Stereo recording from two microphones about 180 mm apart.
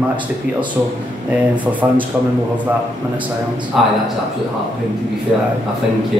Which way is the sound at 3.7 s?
Centre (ahead or behind).